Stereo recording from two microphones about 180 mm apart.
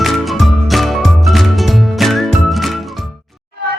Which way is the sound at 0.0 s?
Centre (ahead or behind).